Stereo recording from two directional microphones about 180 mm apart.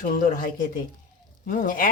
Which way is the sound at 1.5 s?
50° left (ahead or behind).